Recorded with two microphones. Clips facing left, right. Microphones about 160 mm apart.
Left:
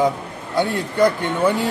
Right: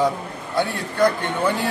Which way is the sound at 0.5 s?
20° left (ahead or behind).